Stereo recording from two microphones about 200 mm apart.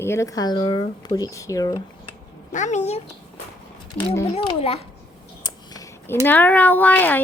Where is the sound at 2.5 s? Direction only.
35° left (ahead or behind).